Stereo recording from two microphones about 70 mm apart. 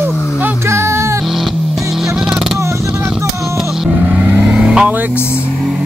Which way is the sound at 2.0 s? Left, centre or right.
Centre.